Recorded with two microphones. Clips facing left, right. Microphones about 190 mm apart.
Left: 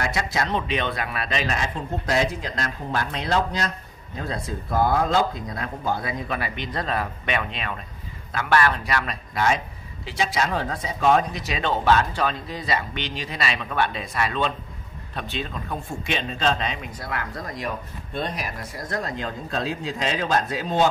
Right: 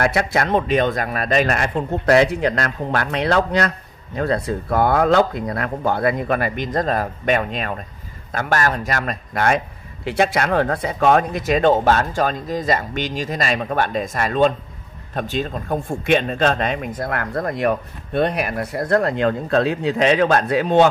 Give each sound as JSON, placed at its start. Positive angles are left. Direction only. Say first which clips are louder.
{"t": 0.0, "sound": "speech", "louder": "right 7 dB", "side_deg": -60}